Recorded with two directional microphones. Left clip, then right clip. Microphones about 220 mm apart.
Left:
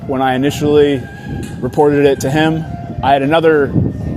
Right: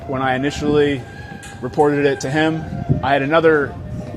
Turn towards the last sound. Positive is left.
turn(degrees=55)  # may be behind; listen again after turning